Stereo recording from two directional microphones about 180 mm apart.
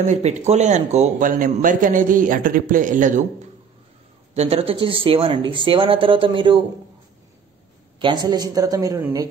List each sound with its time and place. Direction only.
0.0 s speech: 40° right (ahead or behind)
4.3 s speech: 35° right (ahead or behind)
8.0 s speech: 25° right (ahead or behind)